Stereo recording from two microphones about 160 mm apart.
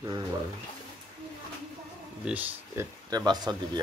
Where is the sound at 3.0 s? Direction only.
25° right (ahead or behind).